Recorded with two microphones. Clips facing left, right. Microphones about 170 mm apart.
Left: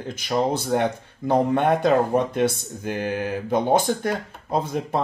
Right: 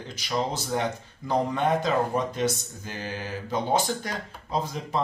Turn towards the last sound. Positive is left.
turn(degrees=55)  # may be behind; listen again after turning